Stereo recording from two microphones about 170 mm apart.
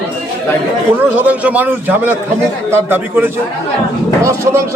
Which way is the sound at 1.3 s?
10° right (ahead or behind).